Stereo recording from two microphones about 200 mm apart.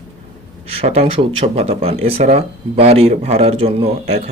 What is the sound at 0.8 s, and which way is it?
Speech, 30° right (ahead or behind).